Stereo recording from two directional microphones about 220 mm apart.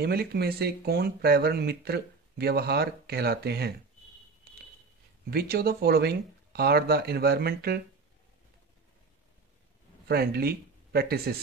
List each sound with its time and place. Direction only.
0.0 s speech: 45° right (ahead or behind)
5.3 s speech: 45° right (ahead or behind)
10.0 s speech: 45° right (ahead or behind)